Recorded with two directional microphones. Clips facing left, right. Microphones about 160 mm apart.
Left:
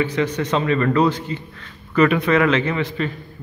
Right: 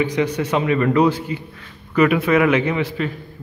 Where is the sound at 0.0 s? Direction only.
15° right (ahead or behind).